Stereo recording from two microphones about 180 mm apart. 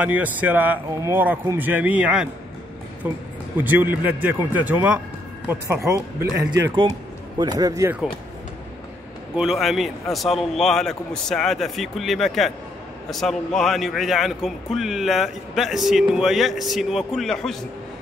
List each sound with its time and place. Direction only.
0.0 s a man's voice: 10° right (ahead or behind)
7.3 s a man's voice: 20° right (ahead or behind)
9.4 s a man's voice: centre (ahead or behind)